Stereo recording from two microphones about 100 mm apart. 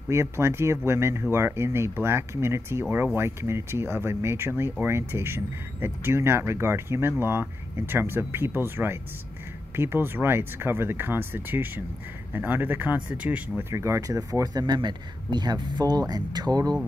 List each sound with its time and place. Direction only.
0.1 s speech: 25° right (ahead or behind)
13.7 s speech: 30° right (ahead or behind)